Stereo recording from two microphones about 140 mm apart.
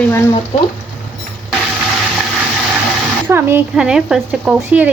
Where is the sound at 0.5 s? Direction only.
45° left (ahead or behind).